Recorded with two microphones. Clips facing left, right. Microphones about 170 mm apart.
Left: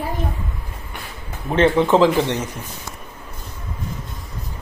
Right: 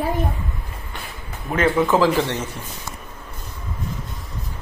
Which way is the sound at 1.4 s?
30° left (ahead or behind).